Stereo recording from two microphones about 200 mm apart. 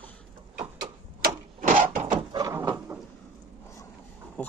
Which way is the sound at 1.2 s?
40° right (ahead or behind).